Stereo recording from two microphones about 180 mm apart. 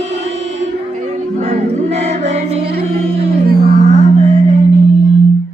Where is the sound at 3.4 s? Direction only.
55° right (ahead or behind).